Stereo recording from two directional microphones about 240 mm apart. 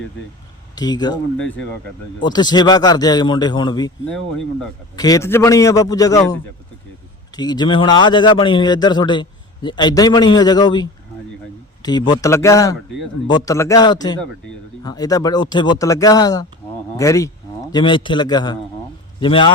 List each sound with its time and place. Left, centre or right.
0.8 s a man's voice: centre
1.4 s speech: centre
2.2 s a man's voice: centre
4.0 s speech: centre
4.9 s a man's voice: centre
7.3 s a man's voice: centre